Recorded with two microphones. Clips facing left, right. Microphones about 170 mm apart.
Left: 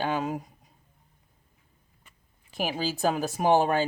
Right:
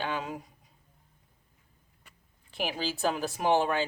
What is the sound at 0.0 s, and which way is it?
Speech, 45° left (ahead or behind).